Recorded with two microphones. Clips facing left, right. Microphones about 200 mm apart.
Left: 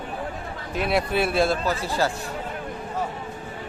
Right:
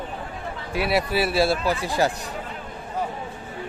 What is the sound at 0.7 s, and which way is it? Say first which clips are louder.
Speech: even; 5° right (ahead or behind).